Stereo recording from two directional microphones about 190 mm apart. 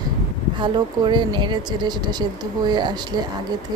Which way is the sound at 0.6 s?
25° right (ahead or behind).